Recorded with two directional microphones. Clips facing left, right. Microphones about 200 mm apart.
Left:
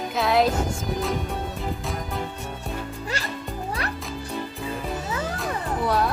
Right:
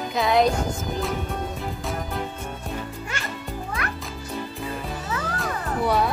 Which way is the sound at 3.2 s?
35° left (ahead or behind).